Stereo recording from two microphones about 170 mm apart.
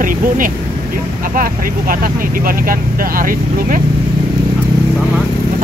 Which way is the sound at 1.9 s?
55° right (ahead or behind).